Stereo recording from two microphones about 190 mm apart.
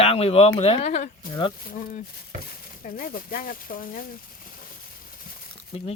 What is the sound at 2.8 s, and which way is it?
Speech, 50° left (ahead or behind).